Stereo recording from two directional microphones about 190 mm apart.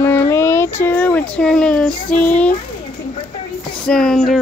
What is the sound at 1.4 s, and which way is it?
Speech, 5° left (ahead or behind).